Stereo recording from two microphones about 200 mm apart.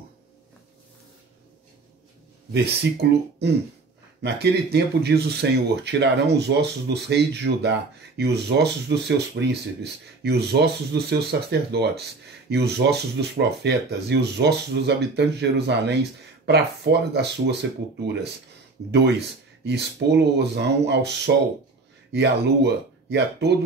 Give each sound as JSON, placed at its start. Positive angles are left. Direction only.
{"t": 2.5, "sound": "speech", "side_deg": -55}
{"t": 22.1, "sound": "speech", "side_deg": -55}